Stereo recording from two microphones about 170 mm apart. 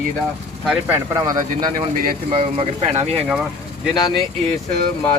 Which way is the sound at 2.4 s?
35° right (ahead or behind).